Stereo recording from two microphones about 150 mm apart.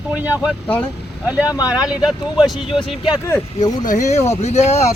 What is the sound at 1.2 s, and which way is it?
Speech, 10° right (ahead or behind).